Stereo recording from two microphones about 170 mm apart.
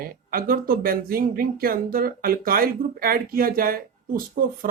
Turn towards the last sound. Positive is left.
turn(degrees=-55)  # may be behind; listen again after turning